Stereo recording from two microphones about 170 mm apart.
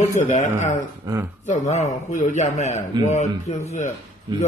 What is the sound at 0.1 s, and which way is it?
A man's voice, 45° left (ahead or behind).